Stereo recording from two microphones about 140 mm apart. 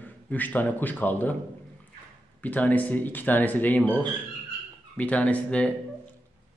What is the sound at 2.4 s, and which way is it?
A man's voice, 10° left (ahead or behind).